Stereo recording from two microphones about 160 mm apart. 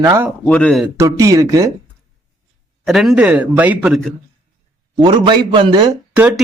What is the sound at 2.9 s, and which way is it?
Speech, centre (ahead or behind).